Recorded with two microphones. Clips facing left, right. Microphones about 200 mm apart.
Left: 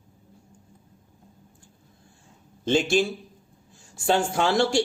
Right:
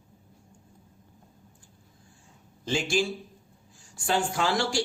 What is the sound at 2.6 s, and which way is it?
Speech, 20° left (ahead or behind).